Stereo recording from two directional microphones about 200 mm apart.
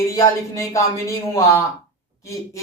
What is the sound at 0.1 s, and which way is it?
Speech, 15° left (ahead or behind).